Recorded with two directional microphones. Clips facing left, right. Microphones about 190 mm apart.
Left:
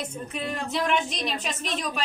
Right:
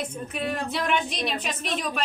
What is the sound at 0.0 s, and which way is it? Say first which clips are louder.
A woman's voice: right 2 dB; centre (ahead or behind).